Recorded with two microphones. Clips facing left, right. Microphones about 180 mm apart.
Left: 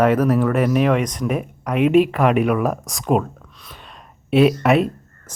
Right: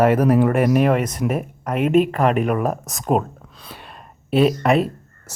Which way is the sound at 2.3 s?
40° right (ahead or behind).